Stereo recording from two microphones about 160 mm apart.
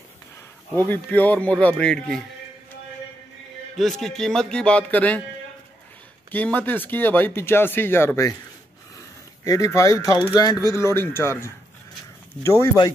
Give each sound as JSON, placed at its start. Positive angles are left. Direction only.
{"t": 0.7, "sound": "speech", "side_deg": 10}
{"t": 3.7, "sound": "music", "side_deg": 0}
{"t": 6.3, "sound": "speech", "side_deg": 10}
{"t": 9.4, "sound": "speech", "side_deg": 20}